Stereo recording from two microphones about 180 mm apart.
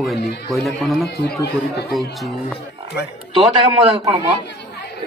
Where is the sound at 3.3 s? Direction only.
25° right (ahead or behind).